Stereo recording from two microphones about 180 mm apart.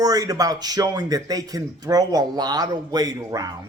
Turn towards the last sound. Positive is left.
turn(degrees=-20)  # may be behind; listen again after turning